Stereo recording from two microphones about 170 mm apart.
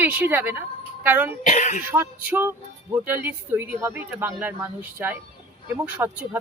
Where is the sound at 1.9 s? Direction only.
15° right (ahead or behind).